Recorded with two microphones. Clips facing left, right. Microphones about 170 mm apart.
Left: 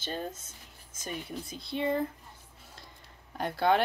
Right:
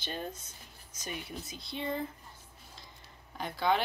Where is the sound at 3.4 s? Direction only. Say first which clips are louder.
Left 4 dB; 55° left (ahead or behind).